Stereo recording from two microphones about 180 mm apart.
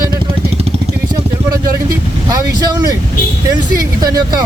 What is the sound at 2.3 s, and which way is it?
Speech, 20° right (ahead or behind).